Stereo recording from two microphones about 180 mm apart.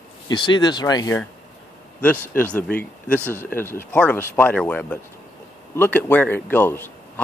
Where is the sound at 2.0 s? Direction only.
10° left (ahead or behind).